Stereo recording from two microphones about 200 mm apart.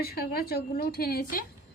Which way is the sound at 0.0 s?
50° left (ahead or behind).